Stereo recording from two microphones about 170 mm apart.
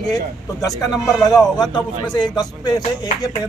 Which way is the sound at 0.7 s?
20° left (ahead or behind).